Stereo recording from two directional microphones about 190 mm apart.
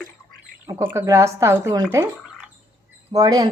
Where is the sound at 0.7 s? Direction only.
15° right (ahead or behind).